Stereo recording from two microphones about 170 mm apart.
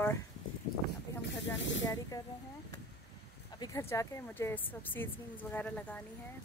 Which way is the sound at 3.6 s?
15° left (ahead or behind).